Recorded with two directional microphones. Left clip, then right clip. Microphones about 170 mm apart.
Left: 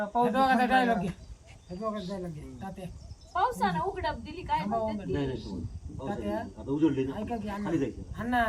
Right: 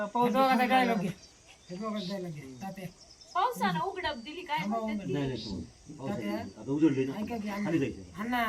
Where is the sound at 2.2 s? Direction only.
Centre (ahead or behind).